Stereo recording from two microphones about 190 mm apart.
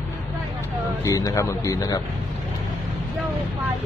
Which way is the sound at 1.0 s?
15° left (ahead or behind).